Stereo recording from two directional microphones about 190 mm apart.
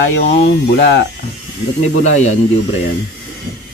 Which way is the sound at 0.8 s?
65° left (ahead or behind).